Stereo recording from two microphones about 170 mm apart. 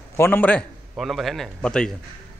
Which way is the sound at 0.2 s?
10° left (ahead or behind).